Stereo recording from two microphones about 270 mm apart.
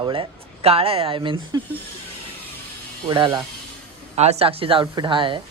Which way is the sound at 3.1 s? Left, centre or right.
Centre.